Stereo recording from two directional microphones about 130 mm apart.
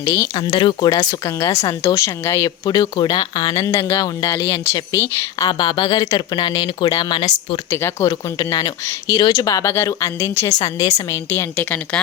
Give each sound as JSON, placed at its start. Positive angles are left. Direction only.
{"t": 0.0, "sound": "a woman's voice", "side_deg": 30}
{"t": 7.7, "sound": "speech", "side_deg": 20}